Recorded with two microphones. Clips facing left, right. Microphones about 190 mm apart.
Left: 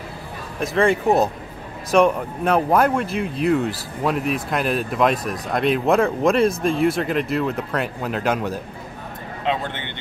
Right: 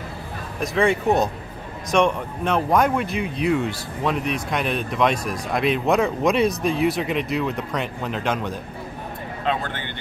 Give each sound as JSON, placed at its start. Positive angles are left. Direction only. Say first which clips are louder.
{"t": 0.6, "sound": "speech", "louder": "left 2 dB", "side_deg": 0}
{"t": 9.4, "sound": "speech", "louder": "left 1 dB", "side_deg": 20}